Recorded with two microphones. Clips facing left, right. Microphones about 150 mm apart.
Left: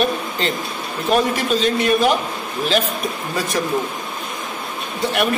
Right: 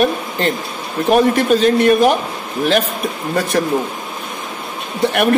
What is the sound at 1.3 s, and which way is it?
Speech, 55° right (ahead or behind).